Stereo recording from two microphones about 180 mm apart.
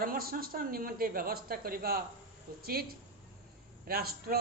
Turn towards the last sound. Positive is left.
turn(degrees=-55)  # may be behind; listen again after turning